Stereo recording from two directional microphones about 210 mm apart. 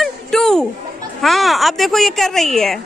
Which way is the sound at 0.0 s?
Centre (ahead or behind).